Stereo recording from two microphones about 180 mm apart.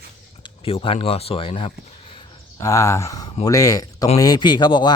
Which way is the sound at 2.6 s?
15° left (ahead or behind).